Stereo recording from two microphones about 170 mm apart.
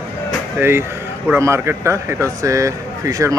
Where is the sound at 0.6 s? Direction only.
15° right (ahead or behind).